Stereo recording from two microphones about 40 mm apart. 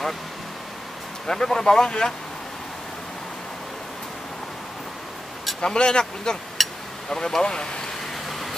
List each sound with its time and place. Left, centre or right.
1.2 s speech: centre
5.6 s speech: left
6.6 s a sound: centre
7.1 s speech: centre
8.3 s vehicle: centre